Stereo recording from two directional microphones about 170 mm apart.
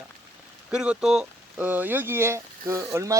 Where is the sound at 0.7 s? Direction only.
5° right (ahead or behind).